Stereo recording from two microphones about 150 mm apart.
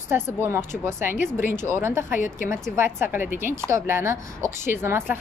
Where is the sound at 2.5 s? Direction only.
15° right (ahead or behind).